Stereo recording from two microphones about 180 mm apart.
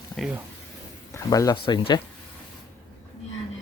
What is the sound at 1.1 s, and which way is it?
Speech, 20° left (ahead or behind).